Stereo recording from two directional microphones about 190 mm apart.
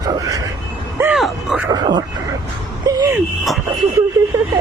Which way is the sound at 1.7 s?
20° right (ahead or behind).